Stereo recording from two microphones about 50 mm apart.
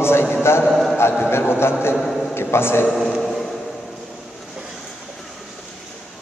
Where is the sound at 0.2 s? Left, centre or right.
Left.